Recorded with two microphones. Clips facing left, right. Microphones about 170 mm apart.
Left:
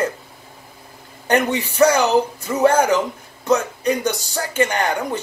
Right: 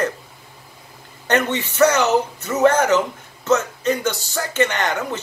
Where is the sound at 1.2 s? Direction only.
15° left (ahead or behind).